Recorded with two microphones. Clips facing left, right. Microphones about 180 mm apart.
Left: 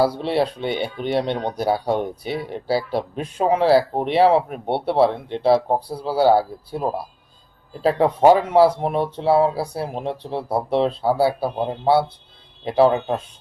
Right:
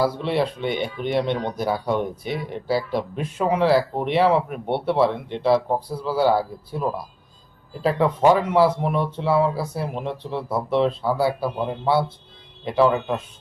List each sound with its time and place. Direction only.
0.2 s speech: 30° left (ahead or behind)